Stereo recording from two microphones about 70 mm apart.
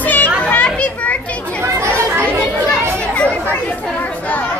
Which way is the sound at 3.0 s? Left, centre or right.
Centre.